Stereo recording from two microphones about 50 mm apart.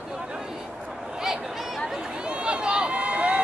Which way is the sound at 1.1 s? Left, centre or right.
Centre.